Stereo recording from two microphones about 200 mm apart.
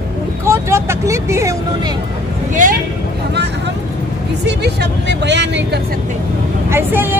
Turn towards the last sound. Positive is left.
turn(degrees=-10)  # may be behind; listen again after turning